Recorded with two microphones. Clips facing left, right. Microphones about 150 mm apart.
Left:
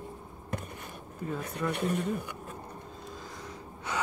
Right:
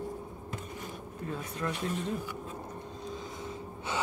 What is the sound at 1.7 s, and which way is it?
Speech, 60° left (ahead or behind).